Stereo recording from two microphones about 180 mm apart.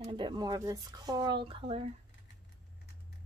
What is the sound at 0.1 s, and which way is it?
Speech, 25° right (ahead or behind).